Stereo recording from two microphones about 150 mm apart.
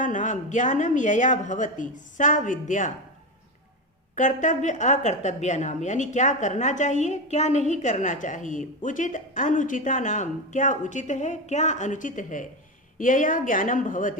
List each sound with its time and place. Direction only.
0.0 s a woman's voice: 55° left (ahead or behind)
4.1 s a woman's voice: 55° left (ahead or behind)